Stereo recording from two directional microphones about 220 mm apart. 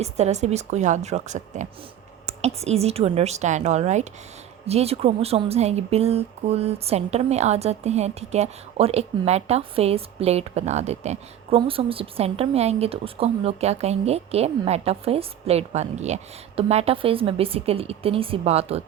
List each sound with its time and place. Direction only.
0.0 s a woman's voice: 30° right (ahead or behind)